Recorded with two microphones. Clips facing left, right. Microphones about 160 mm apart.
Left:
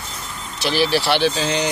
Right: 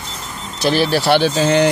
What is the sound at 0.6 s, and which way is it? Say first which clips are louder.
Speech: right 3 dB; 45° right (ahead or behind).